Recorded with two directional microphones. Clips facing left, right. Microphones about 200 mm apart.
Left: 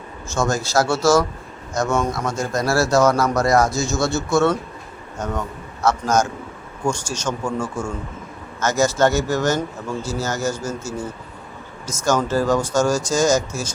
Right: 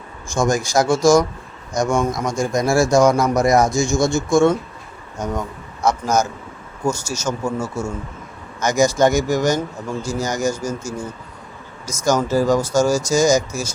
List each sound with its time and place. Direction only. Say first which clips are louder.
0.3 s speech: right 2 dB; 15° right (ahead or behind)